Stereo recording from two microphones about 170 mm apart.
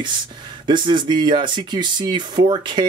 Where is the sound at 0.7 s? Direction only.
25° right (ahead or behind).